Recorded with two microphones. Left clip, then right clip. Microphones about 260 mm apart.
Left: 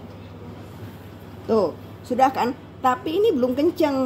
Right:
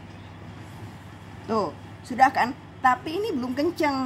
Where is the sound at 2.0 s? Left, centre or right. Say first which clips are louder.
Left 1 dB; right.